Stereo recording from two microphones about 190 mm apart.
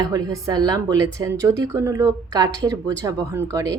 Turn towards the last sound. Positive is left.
turn(degrees=-15)  # may be behind; listen again after turning